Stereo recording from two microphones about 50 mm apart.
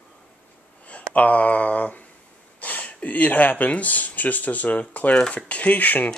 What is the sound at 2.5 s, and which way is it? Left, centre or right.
Speech, left.